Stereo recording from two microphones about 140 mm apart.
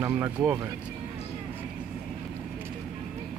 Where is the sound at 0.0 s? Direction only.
15° right (ahead or behind).